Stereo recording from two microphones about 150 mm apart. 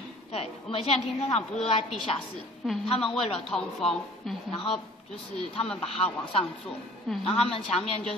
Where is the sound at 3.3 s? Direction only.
5° left (ahead or behind).